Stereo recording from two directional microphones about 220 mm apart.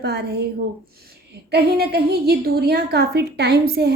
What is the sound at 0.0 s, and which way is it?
Female singing, 50° right (ahead or behind).